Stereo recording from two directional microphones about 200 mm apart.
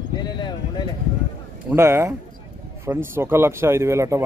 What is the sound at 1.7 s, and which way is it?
A man's voice, 15° right (ahead or behind).